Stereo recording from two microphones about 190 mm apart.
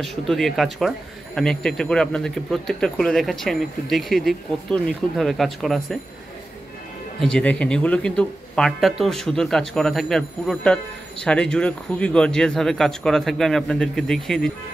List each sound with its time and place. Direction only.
0.0 s speech: centre (ahead or behind)
7.2 s speech: 5° left (ahead or behind)